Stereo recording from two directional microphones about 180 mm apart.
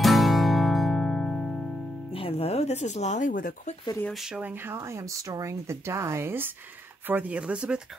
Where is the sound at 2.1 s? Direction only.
30° left (ahead or behind).